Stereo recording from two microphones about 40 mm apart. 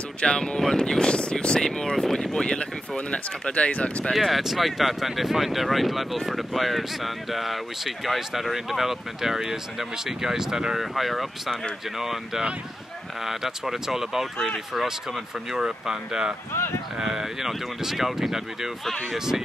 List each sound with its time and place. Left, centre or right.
0.2 s speech: left
4.1 s speech: centre
10.8 s speech: centre
15.5 s speech: centre